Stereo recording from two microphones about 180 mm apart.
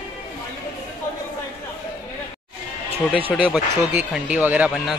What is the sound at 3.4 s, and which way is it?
Speech, 10° right (ahead or behind).